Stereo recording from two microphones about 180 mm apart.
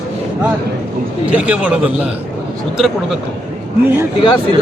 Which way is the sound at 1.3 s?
5° right (ahead or behind).